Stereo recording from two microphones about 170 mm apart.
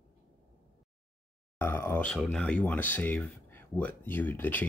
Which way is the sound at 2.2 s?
5° left (ahead or behind).